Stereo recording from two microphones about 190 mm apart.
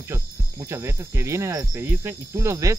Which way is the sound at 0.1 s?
15° right (ahead or behind).